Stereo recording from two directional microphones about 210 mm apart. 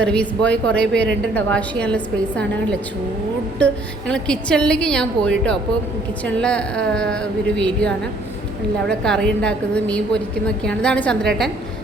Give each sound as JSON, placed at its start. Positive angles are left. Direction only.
{"t": 0.0, "sound": "a woman's voice", "side_deg": 5}
{"t": 4.1, "sound": "a woman's voice", "side_deg": 5}